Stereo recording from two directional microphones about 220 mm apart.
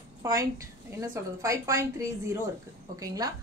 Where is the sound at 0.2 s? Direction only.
15° right (ahead or behind).